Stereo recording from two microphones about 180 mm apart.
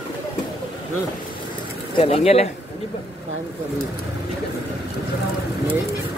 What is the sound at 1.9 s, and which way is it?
Speech, 35° left (ahead or behind).